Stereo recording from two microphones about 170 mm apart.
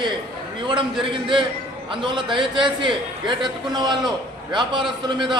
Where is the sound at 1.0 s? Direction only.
30° right (ahead or behind).